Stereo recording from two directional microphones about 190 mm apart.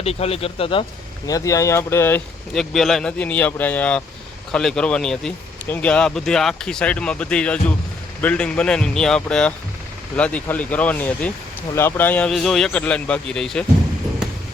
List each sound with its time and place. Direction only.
0.0 s speech: 35° left (ahead or behind)
1.3 s speech: 15° left (ahead or behind)